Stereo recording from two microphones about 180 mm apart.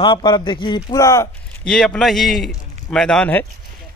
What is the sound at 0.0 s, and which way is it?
Speech, 25° left (ahead or behind).